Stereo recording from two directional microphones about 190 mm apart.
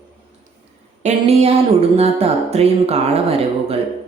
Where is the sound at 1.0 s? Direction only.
35° right (ahead or behind).